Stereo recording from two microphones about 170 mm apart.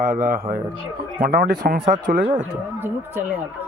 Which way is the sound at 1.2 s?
60° right (ahead or behind).